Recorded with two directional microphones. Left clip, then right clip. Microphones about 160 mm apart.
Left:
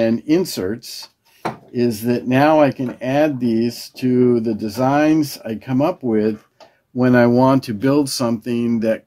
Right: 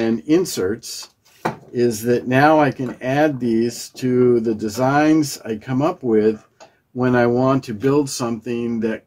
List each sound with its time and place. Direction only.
0.0 s speech: 30° left (ahead or behind)
7.0 s speech: 45° left (ahead or behind)